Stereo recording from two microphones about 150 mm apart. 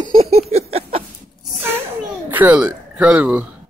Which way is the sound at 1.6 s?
15° right (ahead or behind).